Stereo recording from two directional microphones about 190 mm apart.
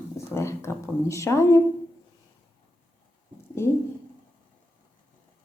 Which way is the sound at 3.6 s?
15° left (ahead or behind).